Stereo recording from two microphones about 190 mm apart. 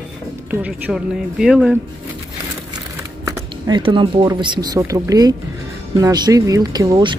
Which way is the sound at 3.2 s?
20° right (ahead or behind).